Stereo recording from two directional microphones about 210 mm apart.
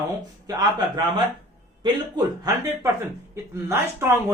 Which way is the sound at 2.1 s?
15° right (ahead or behind).